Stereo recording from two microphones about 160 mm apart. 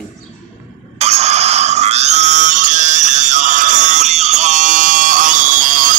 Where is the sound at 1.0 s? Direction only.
40° right (ahead or behind).